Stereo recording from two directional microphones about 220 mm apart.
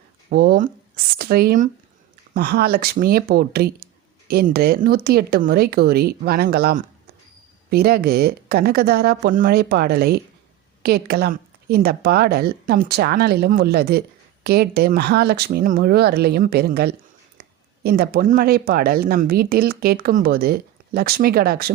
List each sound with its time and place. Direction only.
0.3 s speech: 45° right (ahead or behind)